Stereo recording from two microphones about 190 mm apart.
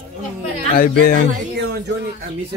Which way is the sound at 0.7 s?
50° left (ahead or behind).